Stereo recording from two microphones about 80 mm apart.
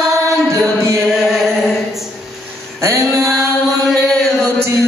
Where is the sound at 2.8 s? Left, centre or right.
Right.